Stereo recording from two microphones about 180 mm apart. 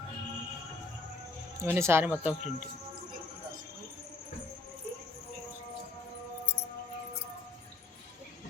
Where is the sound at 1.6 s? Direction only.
15° right (ahead or behind).